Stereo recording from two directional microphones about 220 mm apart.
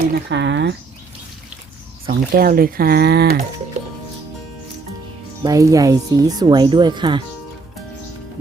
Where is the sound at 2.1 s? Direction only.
40° right (ahead or behind).